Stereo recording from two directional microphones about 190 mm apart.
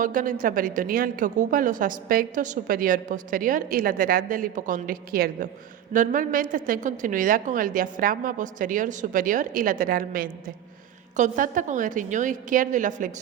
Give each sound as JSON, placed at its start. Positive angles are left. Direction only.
{"t": 0.0, "sound": "a woman's voice", "side_deg": -45}